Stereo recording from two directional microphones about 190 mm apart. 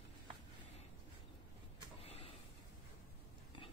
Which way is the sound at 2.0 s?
30° left (ahead or behind).